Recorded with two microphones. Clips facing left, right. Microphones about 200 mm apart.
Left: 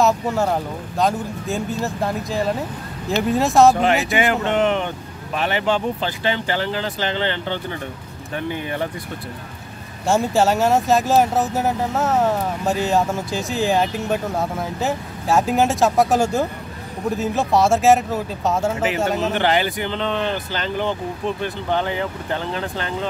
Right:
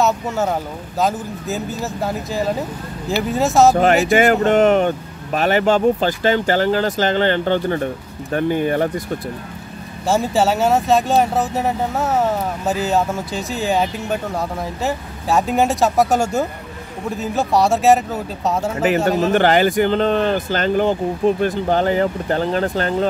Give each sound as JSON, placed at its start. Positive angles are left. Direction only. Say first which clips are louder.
{"t": 0.0, "sound": "speech", "louder": "even", "side_deg": 0}
{"t": 4.1, "sound": "speech", "louder": "right 6 dB", "side_deg": -45}
{"t": 10.0, "sound": "speech", "louder": "even", "side_deg": 0}
{"t": 19.3, "sound": "speech", "louder": "right 6 dB", "side_deg": -45}